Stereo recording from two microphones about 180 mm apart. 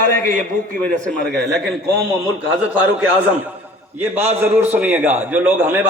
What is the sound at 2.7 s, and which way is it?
A man's voice, 10° right (ahead or behind).